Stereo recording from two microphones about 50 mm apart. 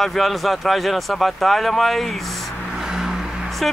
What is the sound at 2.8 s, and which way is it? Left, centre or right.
Vehicle, centre.